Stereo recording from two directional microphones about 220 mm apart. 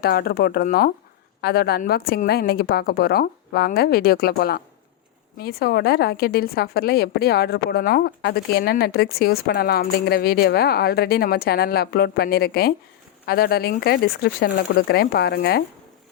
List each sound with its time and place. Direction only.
0.0 s a woman's voice: 45° left (ahead or behind)